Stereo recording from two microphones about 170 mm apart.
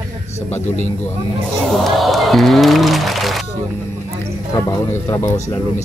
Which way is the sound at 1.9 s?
Centre (ahead or behind).